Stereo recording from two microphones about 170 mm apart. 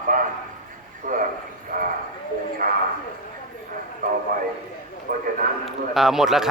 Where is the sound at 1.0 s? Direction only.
55° right (ahead or behind).